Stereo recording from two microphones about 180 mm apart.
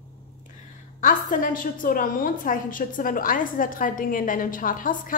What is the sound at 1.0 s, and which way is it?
A woman's voice, 50° left (ahead or behind).